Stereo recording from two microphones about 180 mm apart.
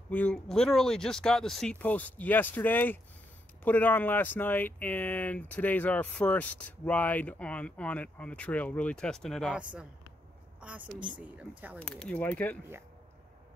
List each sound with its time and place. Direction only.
0.1 s a woman's voice: 5° left (ahead or behind)
11.8 s speech: 5° left (ahead or behind)